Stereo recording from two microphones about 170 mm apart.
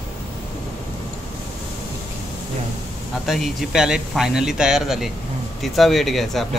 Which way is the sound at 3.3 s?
Centre (ahead or behind).